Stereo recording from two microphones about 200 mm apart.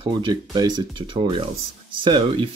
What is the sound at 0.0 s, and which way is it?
Speech, 20° right (ahead or behind).